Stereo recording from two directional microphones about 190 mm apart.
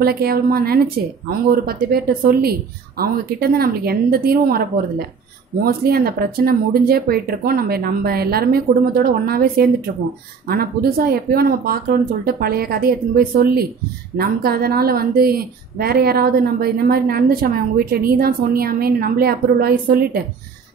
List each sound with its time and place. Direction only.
0.0 s a woman's voice: 55° right (ahead or behind)
3.0 s a woman's voice: 55° right (ahead or behind)